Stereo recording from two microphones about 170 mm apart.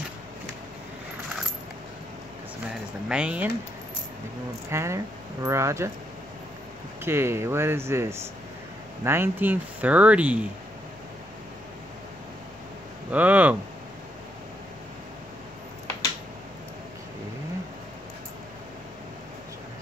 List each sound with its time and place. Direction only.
3.1 s speech: 5° right (ahead or behind)
4.6 s speech: 15° right (ahead or behind)
7.1 s speech: 15° right (ahead or behind)
13.1 s speech: 10° right (ahead or behind)